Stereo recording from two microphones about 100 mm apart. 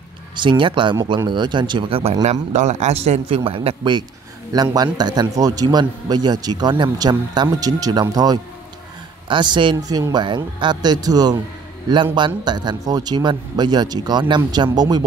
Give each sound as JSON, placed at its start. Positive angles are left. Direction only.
{"t": 0.4, "sound": "a man's voice", "side_deg": -55}
{"t": 2.9, "sound": "speech", "side_deg": -90}
{"t": 4.5, "sound": "a man's voice", "side_deg": -40}